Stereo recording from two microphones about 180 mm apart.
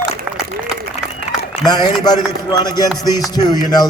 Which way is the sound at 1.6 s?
25° left (ahead or behind).